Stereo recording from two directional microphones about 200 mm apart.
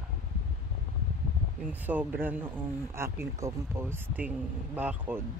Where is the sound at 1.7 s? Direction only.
10° right (ahead or behind).